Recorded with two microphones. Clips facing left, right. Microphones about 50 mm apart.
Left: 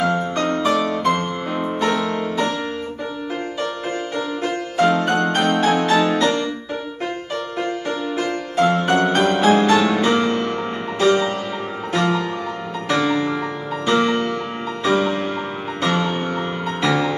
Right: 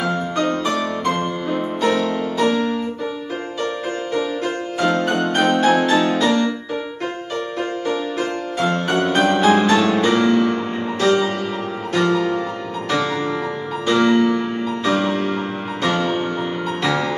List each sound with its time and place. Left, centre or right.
0.6 s music: centre
4.7 s music: centre
8.2 s music: centre
10.3 s music: left
11.0 s music: centre